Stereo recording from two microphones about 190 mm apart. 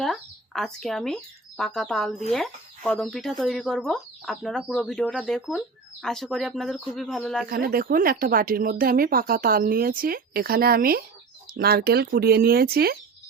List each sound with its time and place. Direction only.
0.0 s speech: centre (ahead or behind)
7.4 s speech: 50° right (ahead or behind)